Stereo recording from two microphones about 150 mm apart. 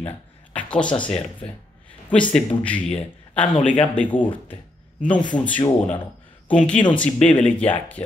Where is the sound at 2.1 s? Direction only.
10° left (ahead or behind).